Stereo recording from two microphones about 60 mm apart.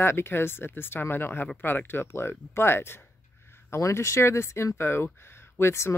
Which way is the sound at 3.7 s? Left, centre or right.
Left.